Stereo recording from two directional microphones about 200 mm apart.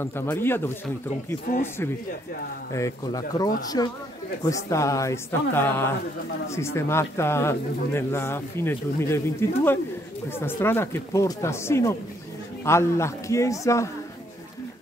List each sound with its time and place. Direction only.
0.0 s speech: 10° left (ahead or behind)
1.5 s speech: 45° left (ahead or behind)
2.7 s speech: 15° left (ahead or behind)